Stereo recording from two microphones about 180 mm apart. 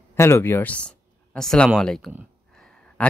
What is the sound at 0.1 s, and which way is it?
Speech, 15° left (ahead or behind).